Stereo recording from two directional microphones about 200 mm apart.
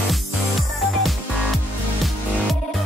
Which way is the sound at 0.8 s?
Centre (ahead or behind).